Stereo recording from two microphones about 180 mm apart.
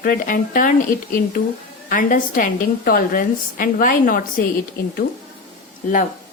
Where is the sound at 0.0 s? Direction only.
50° left (ahead or behind).